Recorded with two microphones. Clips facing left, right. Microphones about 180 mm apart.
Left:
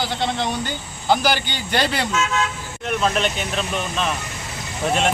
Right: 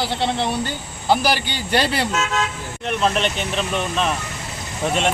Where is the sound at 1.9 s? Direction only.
35° right (ahead or behind).